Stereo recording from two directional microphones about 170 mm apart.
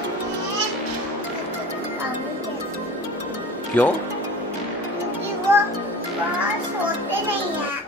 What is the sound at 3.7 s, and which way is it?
Speech, 10° left (ahead or behind).